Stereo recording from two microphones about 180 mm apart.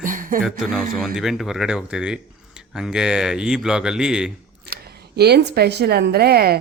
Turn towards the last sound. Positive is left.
turn(degrees=-60)  # may be behind; listen again after turning